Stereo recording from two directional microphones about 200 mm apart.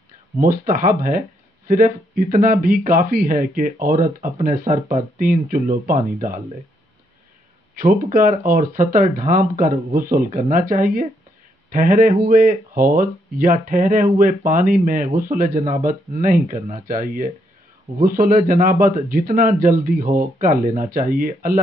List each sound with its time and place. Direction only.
0.5 s speech: 45° right (ahead or behind)
7.8 s speech: 45° right (ahead or behind)